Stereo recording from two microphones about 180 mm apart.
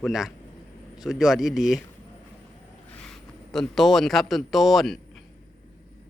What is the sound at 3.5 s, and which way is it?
Speech, centre (ahead or behind).